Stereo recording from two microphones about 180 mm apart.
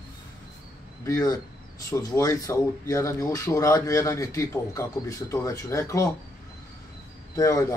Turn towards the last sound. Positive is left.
turn(degrees=20)  # may be behind; listen again after turning